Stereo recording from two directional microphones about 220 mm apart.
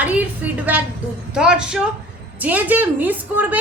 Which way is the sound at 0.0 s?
5° right (ahead or behind).